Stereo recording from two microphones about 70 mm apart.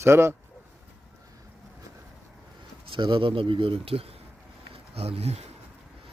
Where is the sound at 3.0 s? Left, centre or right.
Right.